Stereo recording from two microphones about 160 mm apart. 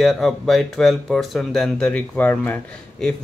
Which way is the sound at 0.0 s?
Centre (ahead or behind).